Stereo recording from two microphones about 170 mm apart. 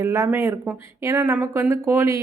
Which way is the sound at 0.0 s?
15° right (ahead or behind).